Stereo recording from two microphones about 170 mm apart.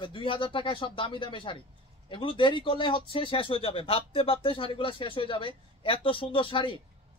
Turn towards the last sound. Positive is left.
turn(degrees=30)  # may be behind; listen again after turning